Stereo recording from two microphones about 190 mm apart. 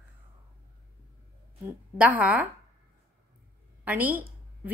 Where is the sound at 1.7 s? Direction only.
10° right (ahead or behind).